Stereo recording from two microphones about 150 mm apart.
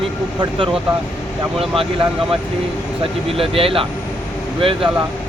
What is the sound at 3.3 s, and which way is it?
Speech, 40° right (ahead or behind).